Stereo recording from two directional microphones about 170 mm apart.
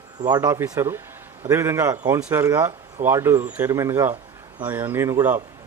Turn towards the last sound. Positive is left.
turn(degrees=-15)  # may be behind; listen again after turning